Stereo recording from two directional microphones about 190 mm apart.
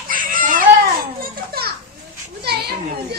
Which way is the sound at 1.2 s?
55° right (ahead or behind).